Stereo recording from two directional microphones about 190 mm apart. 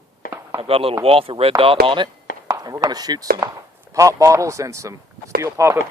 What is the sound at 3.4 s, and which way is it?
Chop, 15° right (ahead or behind).